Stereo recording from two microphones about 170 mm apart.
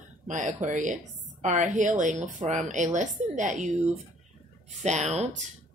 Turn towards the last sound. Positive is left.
turn(degrees=-40)  # may be behind; listen again after turning